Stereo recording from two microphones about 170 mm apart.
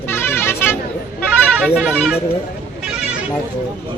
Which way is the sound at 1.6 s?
5° right (ahead or behind).